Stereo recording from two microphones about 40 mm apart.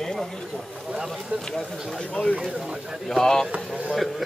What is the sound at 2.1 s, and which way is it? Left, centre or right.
Speech, centre.